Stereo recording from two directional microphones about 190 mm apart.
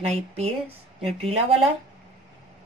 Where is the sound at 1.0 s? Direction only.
30° right (ahead or behind).